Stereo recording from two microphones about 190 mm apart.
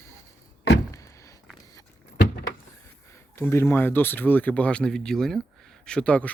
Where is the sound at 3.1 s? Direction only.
15° left (ahead or behind).